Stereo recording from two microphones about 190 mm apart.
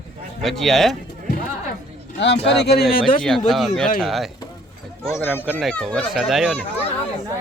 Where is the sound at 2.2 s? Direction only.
65° left (ahead or behind).